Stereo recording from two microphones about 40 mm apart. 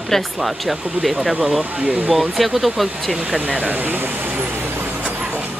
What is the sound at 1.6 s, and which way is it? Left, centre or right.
Speech, right.